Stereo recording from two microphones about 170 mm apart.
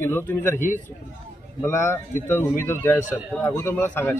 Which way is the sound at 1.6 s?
15° left (ahead or behind).